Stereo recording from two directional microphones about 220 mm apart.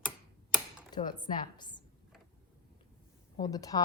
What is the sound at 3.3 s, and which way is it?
Speech, 15° left (ahead or behind).